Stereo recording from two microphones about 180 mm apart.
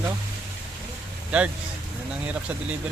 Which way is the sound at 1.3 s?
10° right (ahead or behind).